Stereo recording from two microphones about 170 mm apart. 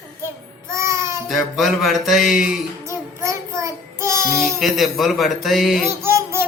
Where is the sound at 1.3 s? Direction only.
Centre (ahead or behind).